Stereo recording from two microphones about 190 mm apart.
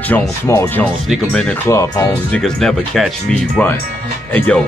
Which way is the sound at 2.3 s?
5° left (ahead or behind).